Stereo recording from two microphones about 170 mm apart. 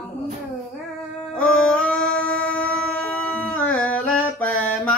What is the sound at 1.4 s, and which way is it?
Music, 5° left (ahead or behind).